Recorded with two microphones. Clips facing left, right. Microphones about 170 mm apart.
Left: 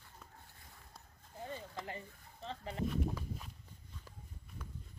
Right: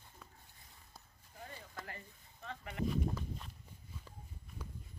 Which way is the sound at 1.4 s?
20° left (ahead or behind).